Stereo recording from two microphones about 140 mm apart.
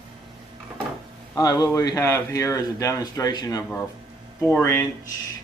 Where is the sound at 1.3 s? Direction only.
25° left (ahead or behind).